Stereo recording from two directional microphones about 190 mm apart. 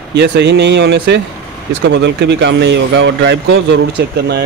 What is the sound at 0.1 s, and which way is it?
Speech, 65° right (ahead or behind).